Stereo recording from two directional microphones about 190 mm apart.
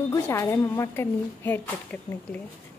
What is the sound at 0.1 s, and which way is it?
A woman's voice, 15° left (ahead or behind).